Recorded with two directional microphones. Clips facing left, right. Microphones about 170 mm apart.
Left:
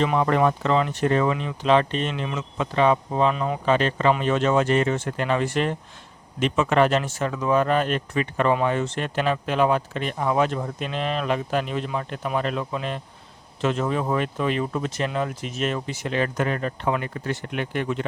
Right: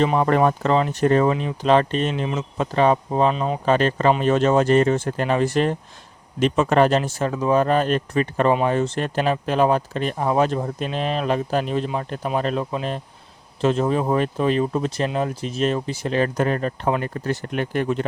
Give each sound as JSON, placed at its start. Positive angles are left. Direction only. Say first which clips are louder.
{"t": 0.0, "sound": "speech", "louder": "right 2 dB", "side_deg": -35}
{"t": 3.7, "sound": "speech", "louder": "right 2 dB", "side_deg": -40}